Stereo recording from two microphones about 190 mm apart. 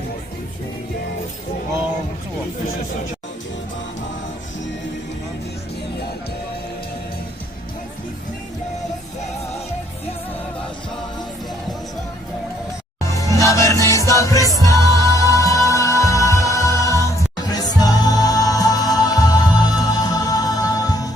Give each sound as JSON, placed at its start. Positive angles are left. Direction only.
{"t": 13.1, "sound": "music", "side_deg": 15}